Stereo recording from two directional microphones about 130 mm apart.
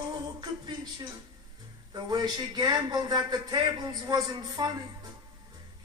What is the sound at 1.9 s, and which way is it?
A man's voice, 30° right (ahead or behind).